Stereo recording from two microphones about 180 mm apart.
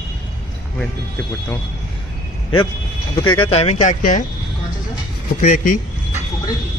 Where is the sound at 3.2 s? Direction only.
25° left (ahead or behind); by 4.2 s 45° left (ahead or behind).